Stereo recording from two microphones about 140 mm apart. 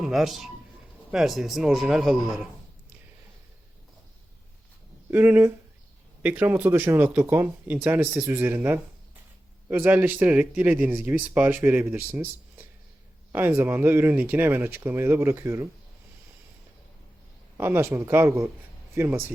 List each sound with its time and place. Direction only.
0.0 s a man's voice: centre (ahead or behind)
5.1 s speech: 15° right (ahead or behind)
17.6 s speech: 15° right (ahead or behind)